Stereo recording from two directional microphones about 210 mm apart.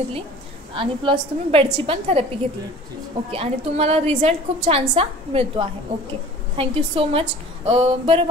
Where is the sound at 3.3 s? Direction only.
30° right (ahead or behind).